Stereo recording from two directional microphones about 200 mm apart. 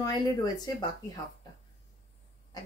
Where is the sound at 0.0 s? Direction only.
20° left (ahead or behind).